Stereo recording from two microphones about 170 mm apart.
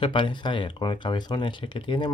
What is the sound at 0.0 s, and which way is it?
Speech, 30° left (ahead or behind).